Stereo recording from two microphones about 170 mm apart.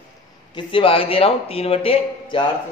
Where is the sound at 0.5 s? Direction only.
30° left (ahead or behind).